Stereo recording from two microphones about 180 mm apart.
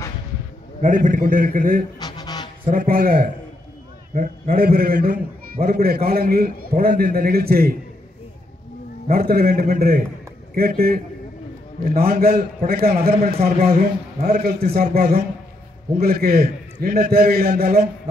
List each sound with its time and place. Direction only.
0.7 s a man's voice: 45° right (ahead or behind)
2.0 s a sound: 20° left (ahead or behind)
2.7 s a man's voice: 50° right (ahead or behind)
9.0 s a man's voice: 55° right (ahead or behind)